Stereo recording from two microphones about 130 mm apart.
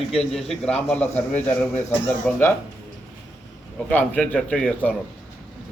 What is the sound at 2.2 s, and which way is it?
Speech, 15° left (ahead or behind).